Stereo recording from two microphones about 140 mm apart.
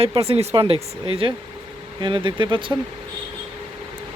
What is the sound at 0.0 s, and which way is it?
Speech, 45° right (ahead or behind).